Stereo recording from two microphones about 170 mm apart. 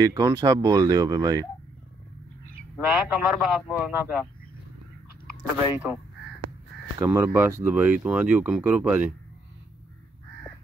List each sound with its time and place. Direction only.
0.0 s speech: 20° right (ahead or behind)
3.1 s speech: centre (ahead or behind)
5.7 s speech: 10° right (ahead or behind)
7.0 s speech: 15° right (ahead or behind)